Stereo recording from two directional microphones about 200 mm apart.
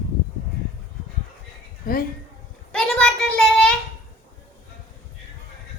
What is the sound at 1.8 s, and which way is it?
Speech, 45° left (ahead or behind).